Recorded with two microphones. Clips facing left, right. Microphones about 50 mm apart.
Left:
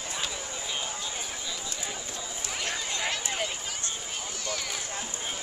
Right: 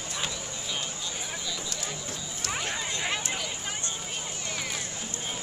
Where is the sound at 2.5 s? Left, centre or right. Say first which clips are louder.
Right 1 dB; right.